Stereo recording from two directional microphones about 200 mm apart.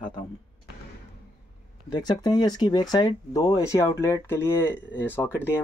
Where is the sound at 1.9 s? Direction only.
20° left (ahead or behind).